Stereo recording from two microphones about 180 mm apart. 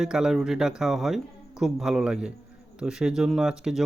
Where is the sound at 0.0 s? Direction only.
5° right (ahead or behind).